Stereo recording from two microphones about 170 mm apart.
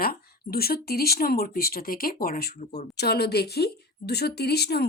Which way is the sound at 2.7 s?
70° left (ahead or behind).